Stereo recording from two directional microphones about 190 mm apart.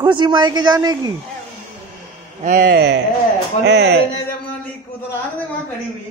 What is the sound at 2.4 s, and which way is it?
A man's voice, 45° right (ahead or behind).